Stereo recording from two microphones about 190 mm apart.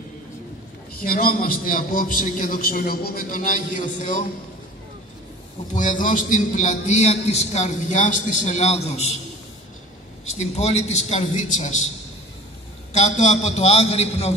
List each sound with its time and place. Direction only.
1.0 s a man's voice: 50° left (ahead or behind)
5.8 s a man's voice: 45° left (ahead or behind)
10.4 s a man's voice: 35° left (ahead or behind)
12.9 s a man's voice: 40° left (ahead or behind)